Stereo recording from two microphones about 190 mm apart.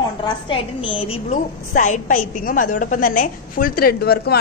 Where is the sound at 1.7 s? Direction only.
40° left (ahead or behind).